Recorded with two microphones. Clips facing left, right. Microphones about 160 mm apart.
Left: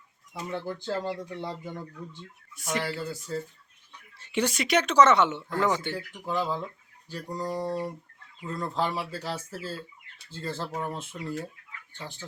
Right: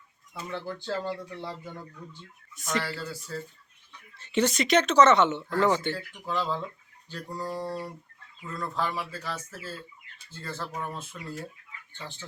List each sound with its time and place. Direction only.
0.4 s a woman's voice: 20° left (ahead or behind)